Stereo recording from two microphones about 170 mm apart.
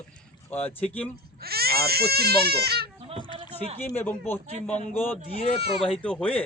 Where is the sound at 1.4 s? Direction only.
65° right (ahead or behind).